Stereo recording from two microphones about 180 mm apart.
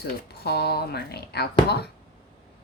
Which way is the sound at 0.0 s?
65° left (ahead or behind).